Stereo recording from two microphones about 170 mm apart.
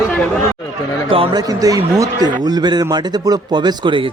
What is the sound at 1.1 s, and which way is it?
Speech, 30° right (ahead or behind).